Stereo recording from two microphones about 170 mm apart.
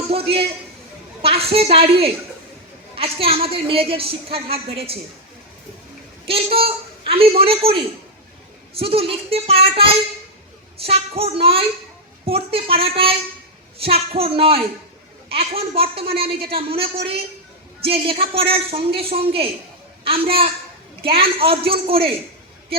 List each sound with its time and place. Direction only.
0.1 s a woman's voice: 35° right (ahead or behind)
6.2 s a woman's voice: 35° right (ahead or behind)